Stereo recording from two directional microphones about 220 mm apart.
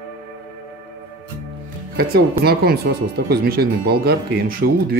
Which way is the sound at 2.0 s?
45° right (ahead or behind).